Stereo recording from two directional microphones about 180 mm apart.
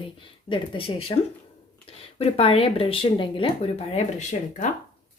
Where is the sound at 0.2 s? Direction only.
30° left (ahead or behind).